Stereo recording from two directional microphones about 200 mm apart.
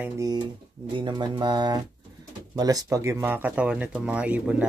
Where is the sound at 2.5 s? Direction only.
20° right (ahead or behind).